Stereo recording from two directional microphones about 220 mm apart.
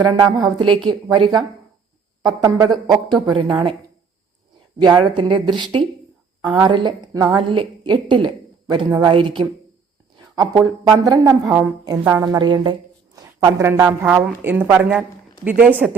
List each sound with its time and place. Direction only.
0.0 s a woman's voice: 15° right (ahead or behind)
4.8 s a woman's voice: 20° right (ahead or behind)